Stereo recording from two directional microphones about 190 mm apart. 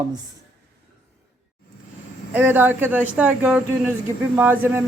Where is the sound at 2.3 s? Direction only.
10° right (ahead or behind).